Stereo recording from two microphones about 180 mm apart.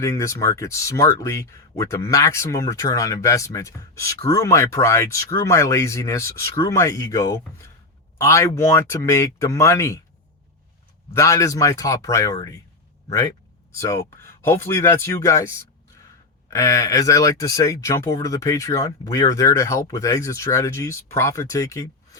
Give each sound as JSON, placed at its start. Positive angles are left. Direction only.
{"t": 0.0, "sound": "speech", "side_deg": 15}
{"t": 11.1, "sound": "speech", "side_deg": 15}